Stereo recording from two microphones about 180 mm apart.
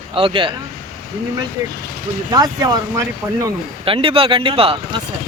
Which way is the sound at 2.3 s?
20° right (ahead or behind).